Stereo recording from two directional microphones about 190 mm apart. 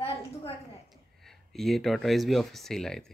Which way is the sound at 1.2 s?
Centre (ahead or behind).